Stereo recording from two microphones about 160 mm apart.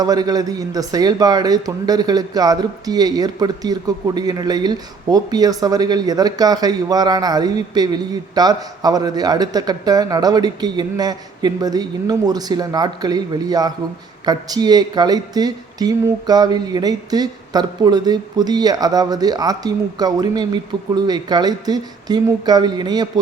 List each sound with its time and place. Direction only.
0.0 s a man's voice: 25° right (ahead or behind)